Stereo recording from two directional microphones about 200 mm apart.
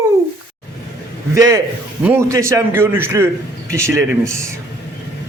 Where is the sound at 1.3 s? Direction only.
15° right (ahead or behind).